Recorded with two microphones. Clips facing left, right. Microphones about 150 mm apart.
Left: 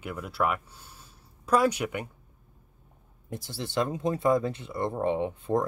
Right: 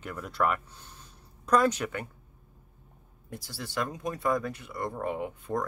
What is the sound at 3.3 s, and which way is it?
Speech, 25° left (ahead or behind).